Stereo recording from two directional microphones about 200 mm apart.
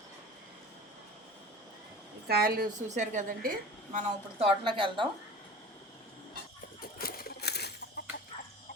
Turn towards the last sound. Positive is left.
turn(degrees=55)  # may be behind; listen again after turning